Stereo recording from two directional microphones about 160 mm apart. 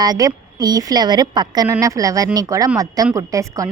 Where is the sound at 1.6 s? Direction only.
15° right (ahead or behind).